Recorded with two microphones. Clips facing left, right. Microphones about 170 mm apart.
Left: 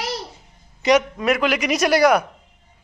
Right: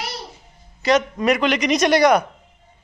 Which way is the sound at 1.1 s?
Centre (ahead or behind).